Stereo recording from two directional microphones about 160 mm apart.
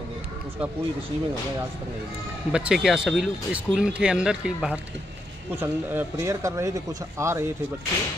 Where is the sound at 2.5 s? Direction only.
5° right (ahead or behind).